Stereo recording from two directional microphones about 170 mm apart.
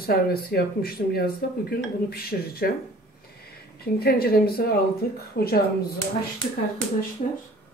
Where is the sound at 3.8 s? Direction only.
65° left (ahead or behind).